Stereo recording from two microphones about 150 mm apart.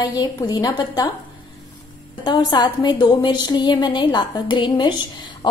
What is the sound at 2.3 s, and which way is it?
A woman's voice, 25° left (ahead or behind).